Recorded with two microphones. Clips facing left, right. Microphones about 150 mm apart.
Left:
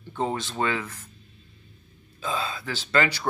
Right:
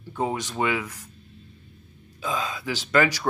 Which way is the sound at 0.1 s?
10° right (ahead or behind).